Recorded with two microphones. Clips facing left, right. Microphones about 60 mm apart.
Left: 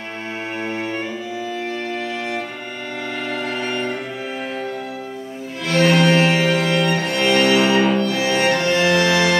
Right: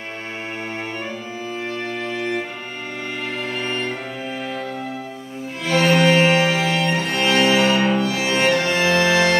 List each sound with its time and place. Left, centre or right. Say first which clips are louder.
5.7 s music: left 1 dB; right